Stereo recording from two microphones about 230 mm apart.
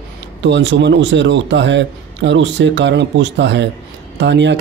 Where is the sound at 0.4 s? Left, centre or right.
Right.